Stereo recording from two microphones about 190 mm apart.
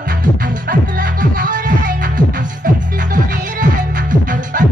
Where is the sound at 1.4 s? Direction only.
45° right (ahead or behind).